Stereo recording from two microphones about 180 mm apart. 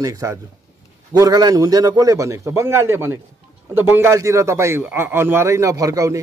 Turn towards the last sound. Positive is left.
turn(degrees=-20)  # may be behind; listen again after turning